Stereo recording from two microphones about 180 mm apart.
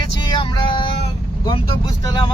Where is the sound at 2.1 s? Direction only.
20° left (ahead or behind).